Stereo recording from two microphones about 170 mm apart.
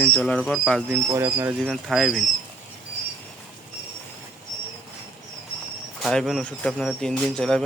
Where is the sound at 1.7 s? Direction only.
Centre (ahead or behind).